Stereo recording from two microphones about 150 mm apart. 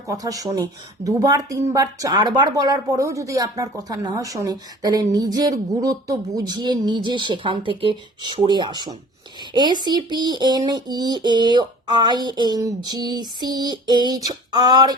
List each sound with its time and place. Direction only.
0.1 s speech: 25° right (ahead or behind)